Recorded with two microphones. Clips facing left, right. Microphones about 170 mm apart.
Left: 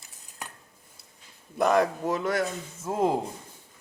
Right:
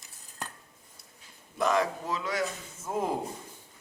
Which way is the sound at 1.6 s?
60° left (ahead or behind).